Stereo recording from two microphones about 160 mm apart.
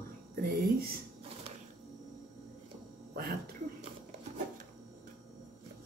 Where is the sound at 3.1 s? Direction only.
70° right (ahead or behind).